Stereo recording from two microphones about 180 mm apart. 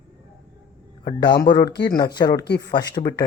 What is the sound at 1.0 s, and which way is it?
Speech, 25° left (ahead or behind).